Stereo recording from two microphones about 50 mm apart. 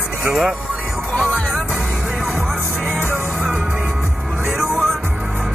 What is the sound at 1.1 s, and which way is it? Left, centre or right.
Music, centre.